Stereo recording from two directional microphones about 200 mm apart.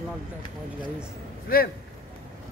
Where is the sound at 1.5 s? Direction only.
45° left (ahead or behind).